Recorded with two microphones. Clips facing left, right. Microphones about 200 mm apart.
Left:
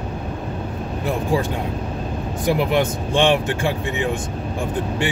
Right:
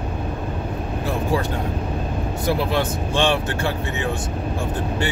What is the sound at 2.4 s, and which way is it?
Speech, 15° left (ahead or behind).